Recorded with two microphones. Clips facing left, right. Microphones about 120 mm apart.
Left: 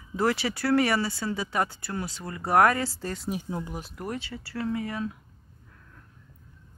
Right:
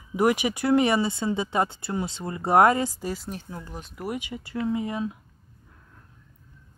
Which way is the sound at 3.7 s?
5° left (ahead or behind).